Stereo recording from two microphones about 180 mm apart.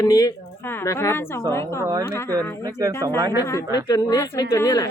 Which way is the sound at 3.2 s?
20° right (ahead or behind).